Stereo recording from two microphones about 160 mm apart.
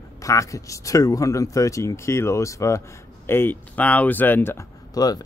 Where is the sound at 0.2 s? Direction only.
20° left (ahead or behind).